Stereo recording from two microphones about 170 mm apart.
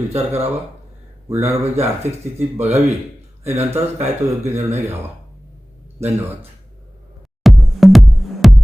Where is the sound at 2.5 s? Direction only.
40° right (ahead or behind).